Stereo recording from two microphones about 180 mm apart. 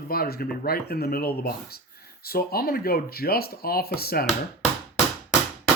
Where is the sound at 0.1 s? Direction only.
55° left (ahead or behind).